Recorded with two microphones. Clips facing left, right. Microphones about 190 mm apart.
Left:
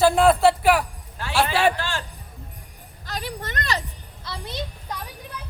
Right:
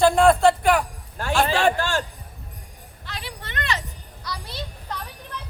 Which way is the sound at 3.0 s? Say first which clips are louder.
Left 5 dB; 40° left (ahead or behind).